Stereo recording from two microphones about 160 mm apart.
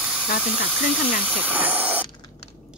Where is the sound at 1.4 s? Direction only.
10° right (ahead or behind).